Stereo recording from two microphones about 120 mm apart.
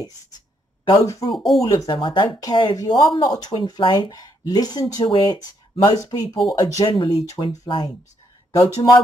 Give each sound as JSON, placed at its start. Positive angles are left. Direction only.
{"t": 0.8, "sound": "speech", "side_deg": 25}
{"t": 1.3, "sound": "speech", "side_deg": 0}
{"t": 1.9, "sound": "speech", "side_deg": 40}
{"t": 5.0, "sound": "speech", "side_deg": 45}
{"t": 5.4, "sound": "speech", "side_deg": 35}
{"t": 8.5, "sound": "speech", "side_deg": 30}